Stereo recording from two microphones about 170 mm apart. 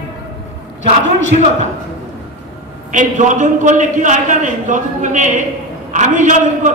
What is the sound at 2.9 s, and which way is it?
A woman's voice, 50° right (ahead or behind).